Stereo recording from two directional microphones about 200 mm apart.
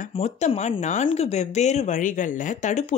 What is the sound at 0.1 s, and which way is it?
Speech, 30° left (ahead or behind).